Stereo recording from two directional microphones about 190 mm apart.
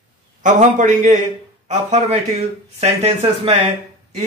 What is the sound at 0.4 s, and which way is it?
Speech, 40° right (ahead or behind).